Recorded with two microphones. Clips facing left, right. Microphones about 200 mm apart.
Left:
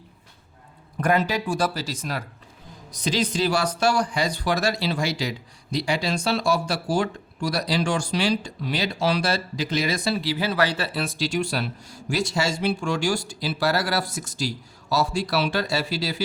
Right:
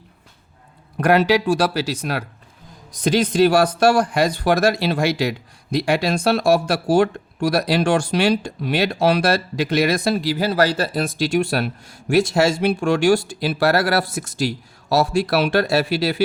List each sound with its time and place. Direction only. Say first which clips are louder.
0.9 s speech: right 7 dB; 75° right (ahead or behind)
3.0 s speech: right 8 dB; 55° right (ahead or behind)